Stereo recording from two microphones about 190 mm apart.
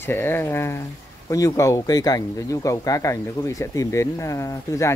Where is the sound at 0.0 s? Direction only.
10° left (ahead or behind).